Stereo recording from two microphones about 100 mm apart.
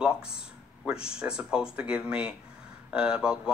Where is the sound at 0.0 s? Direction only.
10° right (ahead or behind).